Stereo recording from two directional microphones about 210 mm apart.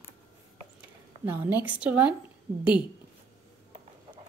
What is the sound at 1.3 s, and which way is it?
Speech, 10° right (ahead or behind).